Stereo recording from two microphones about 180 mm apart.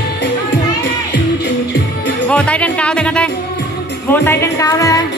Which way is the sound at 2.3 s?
5° left (ahead or behind).